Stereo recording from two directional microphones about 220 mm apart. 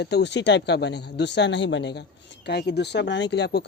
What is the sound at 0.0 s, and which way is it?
Speech, 50° left (ahead or behind).